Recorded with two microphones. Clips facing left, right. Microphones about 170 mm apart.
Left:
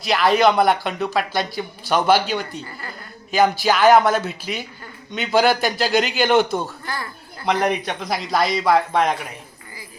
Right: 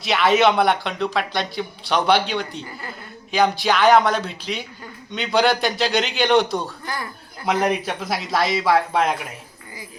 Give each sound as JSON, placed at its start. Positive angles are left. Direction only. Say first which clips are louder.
{"t": 0.0, "sound": "speech", "louder": "left 1 dB", "side_deg": 0}
{"t": 6.8, "sound": "speech", "louder": "even", "side_deg": -20}
{"t": 7.4, "sound": "speech", "louder": "even", "side_deg": -5}